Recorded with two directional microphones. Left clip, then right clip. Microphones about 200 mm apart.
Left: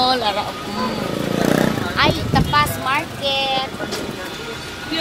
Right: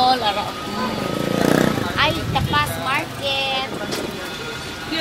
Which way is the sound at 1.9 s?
15° left (ahead or behind).